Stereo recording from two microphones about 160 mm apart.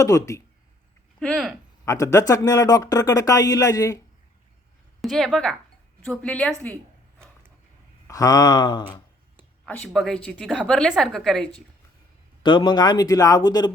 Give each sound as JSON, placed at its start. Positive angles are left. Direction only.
{"t": 0.0, "sound": "a man's voice", "side_deg": 20}
{"t": 1.2, "sound": "a woman's voice", "side_deg": 0}
{"t": 1.8, "sound": "a man's voice", "side_deg": 20}
{"t": 4.9, "sound": "a woman's voice", "side_deg": 0}
{"t": 8.0, "sound": "a sound", "side_deg": 20}
{"t": 9.6, "sound": "a woman's voice", "side_deg": 5}
{"t": 12.4, "sound": "a man's voice", "side_deg": 30}